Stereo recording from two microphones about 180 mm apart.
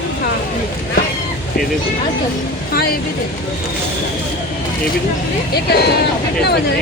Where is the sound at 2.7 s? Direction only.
55° left (ahead or behind).